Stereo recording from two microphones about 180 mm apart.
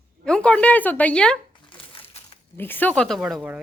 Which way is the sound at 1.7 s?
30° left (ahead or behind).